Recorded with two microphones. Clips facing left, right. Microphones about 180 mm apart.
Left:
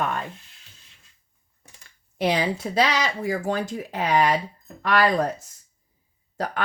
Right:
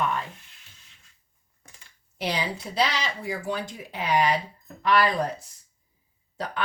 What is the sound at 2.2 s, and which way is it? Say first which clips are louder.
A woman's voice: left 6 dB; 50° left (ahead or behind).